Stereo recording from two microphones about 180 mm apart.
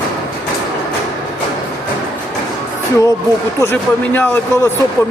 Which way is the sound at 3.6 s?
10° left (ahead or behind).